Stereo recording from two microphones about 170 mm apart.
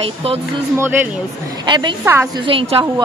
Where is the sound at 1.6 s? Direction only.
25° right (ahead or behind).